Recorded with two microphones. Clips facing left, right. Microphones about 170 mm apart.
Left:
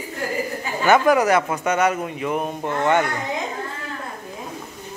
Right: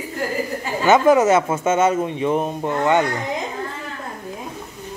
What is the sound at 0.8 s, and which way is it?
Speech, 20° right (ahead or behind).